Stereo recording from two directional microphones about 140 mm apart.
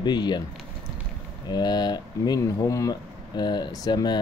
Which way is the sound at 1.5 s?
30° left (ahead or behind).